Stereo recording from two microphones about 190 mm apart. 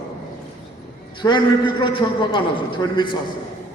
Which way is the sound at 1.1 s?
25° left (ahead or behind).